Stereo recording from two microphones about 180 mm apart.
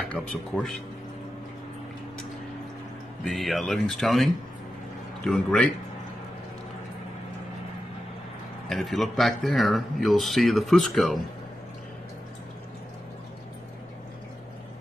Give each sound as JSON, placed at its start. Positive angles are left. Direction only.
{"t": 0.0, "sound": "speech", "side_deg": 0}
{"t": 3.3, "sound": "speech", "side_deg": 0}
{"t": 8.6, "sound": "speech", "side_deg": 0}